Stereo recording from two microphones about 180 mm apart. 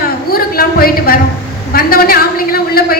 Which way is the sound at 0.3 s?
55° left (ahead or behind).